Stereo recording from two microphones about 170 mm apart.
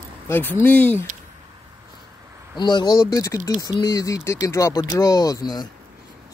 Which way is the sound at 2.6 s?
25° left (ahead or behind).